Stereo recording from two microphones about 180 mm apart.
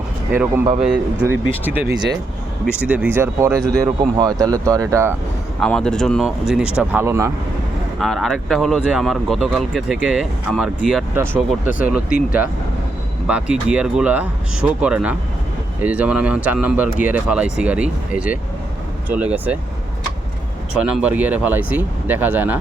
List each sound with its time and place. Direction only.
0.3 s speech: 10° right (ahead or behind)
5.5 s speech: 5° left (ahead or behind); by 7.3 s 15° right (ahead or behind)
7.9 s speech: centre (ahead or behind)
13.2 s speech: 5° right (ahead or behind)
20.7 s speech: 5° right (ahead or behind)